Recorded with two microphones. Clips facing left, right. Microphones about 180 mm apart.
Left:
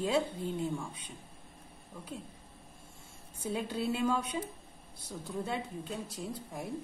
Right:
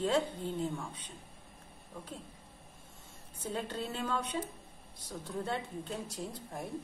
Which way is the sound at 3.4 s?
10° left (ahead or behind).